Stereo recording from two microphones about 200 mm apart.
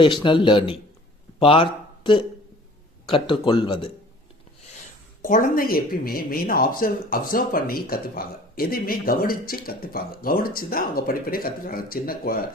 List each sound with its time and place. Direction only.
0.0 s a man's voice: 25° left (ahead or behind)
3.1 s speech: 25° left (ahead or behind)
5.2 s speech: 45° left (ahead or behind)